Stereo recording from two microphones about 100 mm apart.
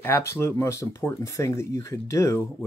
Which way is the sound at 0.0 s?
25° left (ahead or behind).